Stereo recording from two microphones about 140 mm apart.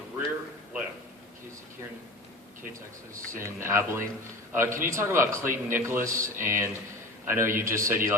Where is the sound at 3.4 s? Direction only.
20° right (ahead or behind).